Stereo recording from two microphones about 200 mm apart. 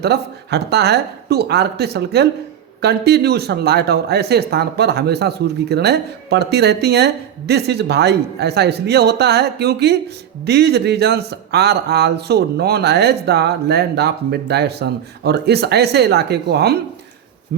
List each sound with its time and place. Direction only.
0.0 s speech: 55° right (ahead or behind)